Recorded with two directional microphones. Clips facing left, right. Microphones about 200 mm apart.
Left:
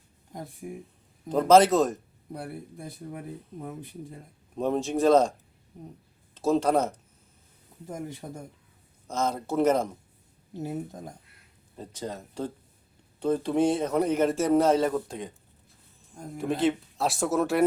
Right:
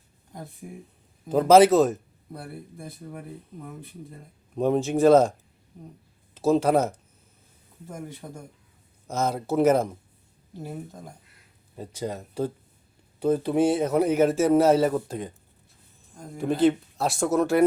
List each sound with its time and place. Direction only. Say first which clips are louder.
0.6 s speech: left 4 dB; 5° left (ahead or behind)
1.3 s speech: right 3 dB; 5° right (ahead or behind)
2.3 s speech: left 2 dB; 15° left (ahead or behind)
4.5 s speech: right 4 dB; centre (ahead or behind)
6.3 s speech: right 3 dB; 5° right (ahead or behind)
8.2 s speech: left 1 dB; 15° left (ahead or behind)
9.0 s a man's voice: right 2 dB; 5° right (ahead or behind)
10.6 s speech: left 3 dB; 15° left (ahead or behind)
11.8 s a man's voice: right 4 dB; 10° right (ahead or behind)
16.4 s speech: right 4 dB; centre (ahead or behind)